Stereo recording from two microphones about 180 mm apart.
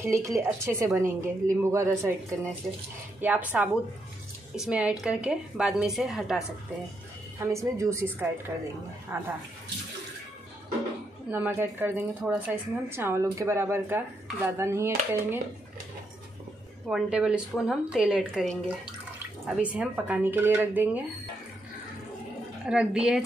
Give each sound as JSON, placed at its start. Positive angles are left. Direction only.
{"t": 0.0, "sound": "speech", "side_deg": -15}
{"t": 3.2, "sound": "a woman's voice", "side_deg": -10}
{"t": 7.3, "sound": "speech", "side_deg": -15}
{"t": 11.2, "sound": "speech", "side_deg": -10}
{"t": 16.9, "sound": "a woman's voice", "side_deg": -5}
{"t": 22.7, "sound": "a woman's voice", "side_deg": -5}